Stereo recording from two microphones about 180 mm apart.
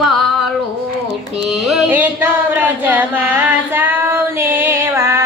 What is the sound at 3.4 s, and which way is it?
Female singing, 10° right (ahead or behind).